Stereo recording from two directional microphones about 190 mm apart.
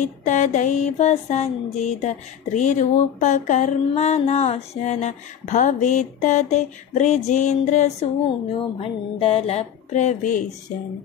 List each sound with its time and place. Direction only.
0.0 s mantra: 40° left (ahead or behind)